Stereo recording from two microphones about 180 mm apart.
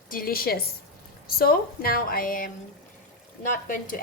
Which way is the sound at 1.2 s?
55° left (ahead or behind).